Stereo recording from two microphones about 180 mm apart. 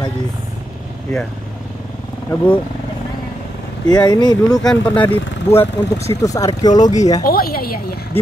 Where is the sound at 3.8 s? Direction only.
20° left (ahead or behind).